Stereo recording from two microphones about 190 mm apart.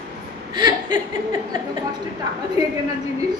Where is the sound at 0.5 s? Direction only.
25° right (ahead or behind).